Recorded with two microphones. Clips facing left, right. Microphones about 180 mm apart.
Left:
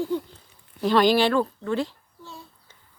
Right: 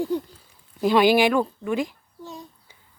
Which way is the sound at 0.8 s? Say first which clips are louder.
Right 2 dB; 10° right (ahead or behind).